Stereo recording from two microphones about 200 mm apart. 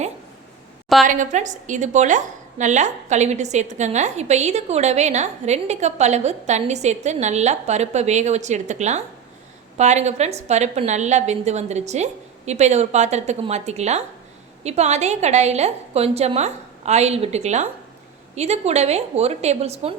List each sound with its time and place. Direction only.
1.0 s a woman's voice: 40° right (ahead or behind)